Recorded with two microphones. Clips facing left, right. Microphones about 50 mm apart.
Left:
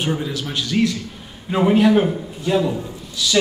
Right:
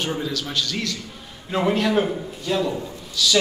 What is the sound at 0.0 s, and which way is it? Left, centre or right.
A man's voice, centre.